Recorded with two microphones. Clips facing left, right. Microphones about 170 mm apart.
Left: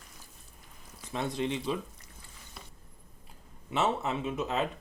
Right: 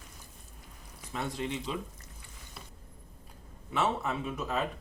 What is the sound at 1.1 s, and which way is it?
Speech, 20° left (ahead or behind).